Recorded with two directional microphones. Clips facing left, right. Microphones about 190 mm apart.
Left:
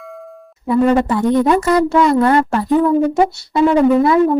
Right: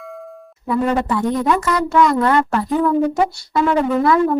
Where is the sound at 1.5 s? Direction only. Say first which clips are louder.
Left 5 dB; 30° left (ahead or behind).